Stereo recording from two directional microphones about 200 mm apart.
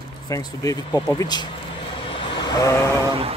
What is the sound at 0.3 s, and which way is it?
Speech, 20° left (ahead or behind).